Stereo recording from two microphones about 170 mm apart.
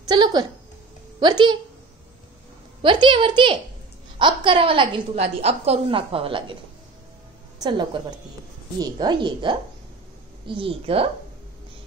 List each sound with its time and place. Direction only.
0.0 s a woman's voice: 25° right (ahead or behind)
2.8 s a woman's voice: 30° right (ahead or behind)
7.5 s a woman's voice: 25° right (ahead or behind)